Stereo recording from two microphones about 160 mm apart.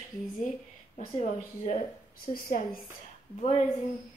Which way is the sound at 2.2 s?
60° left (ahead or behind).